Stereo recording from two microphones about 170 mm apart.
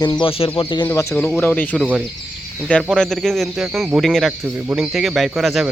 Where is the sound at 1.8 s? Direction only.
5° right (ahead or behind).